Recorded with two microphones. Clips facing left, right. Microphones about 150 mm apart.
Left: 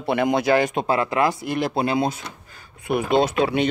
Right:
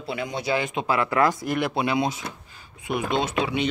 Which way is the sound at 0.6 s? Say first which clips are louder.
Left 6 dB; 40° left (ahead or behind).